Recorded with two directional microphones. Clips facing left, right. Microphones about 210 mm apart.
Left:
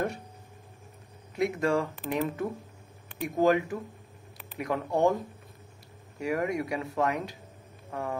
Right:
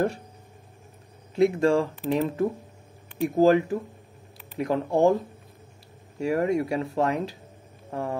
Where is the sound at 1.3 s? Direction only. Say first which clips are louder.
Right 6 dB; 30° right (ahead or behind).